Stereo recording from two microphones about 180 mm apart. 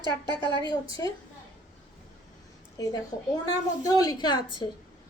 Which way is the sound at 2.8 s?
20° left (ahead or behind).